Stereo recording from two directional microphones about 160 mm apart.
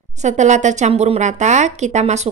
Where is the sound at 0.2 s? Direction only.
50° right (ahead or behind).